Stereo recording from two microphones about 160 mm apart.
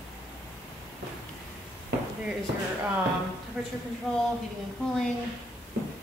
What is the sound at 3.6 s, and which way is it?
Speech, centre (ahead or behind).